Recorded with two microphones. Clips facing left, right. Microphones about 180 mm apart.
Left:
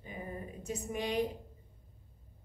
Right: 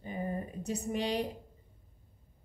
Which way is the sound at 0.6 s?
70° right (ahead or behind).